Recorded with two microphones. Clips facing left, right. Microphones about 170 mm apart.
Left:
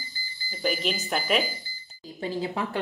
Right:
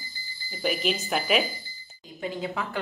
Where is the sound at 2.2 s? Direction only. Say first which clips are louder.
Left 2 dB; 30° left (ahead or behind).